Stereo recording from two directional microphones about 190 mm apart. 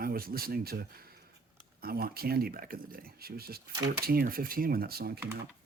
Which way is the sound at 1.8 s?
55° right (ahead or behind).